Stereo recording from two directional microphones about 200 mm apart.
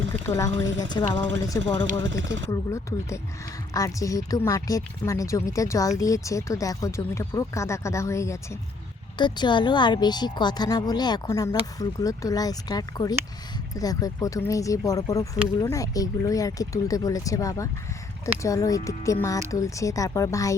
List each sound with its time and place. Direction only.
0.3 s speech: 15° left (ahead or behind)